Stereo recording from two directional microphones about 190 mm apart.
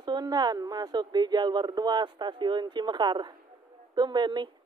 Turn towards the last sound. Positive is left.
turn(degrees=-25)  # may be behind; listen again after turning